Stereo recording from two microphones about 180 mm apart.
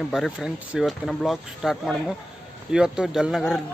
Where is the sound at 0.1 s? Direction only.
Centre (ahead or behind).